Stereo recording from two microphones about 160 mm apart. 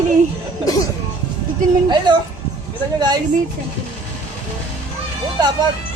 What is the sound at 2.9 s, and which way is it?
Speech, 25° right (ahead or behind).